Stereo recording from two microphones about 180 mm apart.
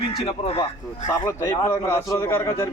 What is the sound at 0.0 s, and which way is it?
Speech, 30° left (ahead or behind).